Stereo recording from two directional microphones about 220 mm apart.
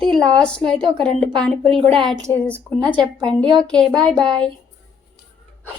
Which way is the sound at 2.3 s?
5° left (ahead or behind).